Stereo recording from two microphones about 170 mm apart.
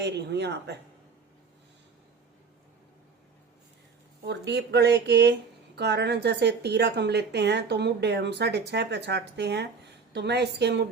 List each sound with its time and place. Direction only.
0.0 s a woman's voice: 90° right
4.3 s a woman's voice: 85° right